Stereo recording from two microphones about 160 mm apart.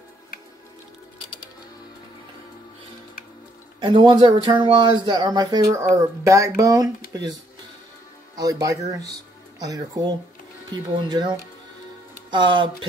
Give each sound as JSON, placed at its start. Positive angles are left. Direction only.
{"t": 3.8, "sound": "speech", "side_deg": -30}
{"t": 8.4, "sound": "speech", "side_deg": -20}